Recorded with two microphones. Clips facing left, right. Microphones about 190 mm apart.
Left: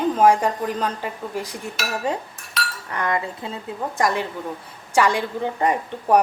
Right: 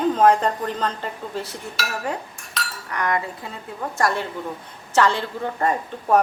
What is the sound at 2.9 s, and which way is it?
A woman's voice, 25° left (ahead or behind).